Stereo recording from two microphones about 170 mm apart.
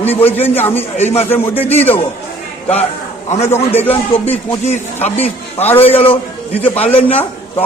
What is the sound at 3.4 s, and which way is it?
Speech, 15° left (ahead or behind).